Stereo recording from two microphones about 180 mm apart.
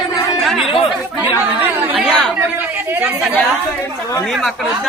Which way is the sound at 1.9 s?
Centre (ahead or behind).